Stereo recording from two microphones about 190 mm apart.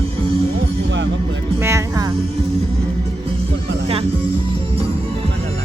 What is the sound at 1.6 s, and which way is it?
Music, 15° right (ahead or behind).